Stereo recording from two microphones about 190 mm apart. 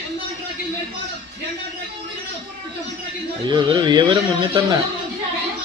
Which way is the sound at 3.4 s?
25° right (ahead or behind).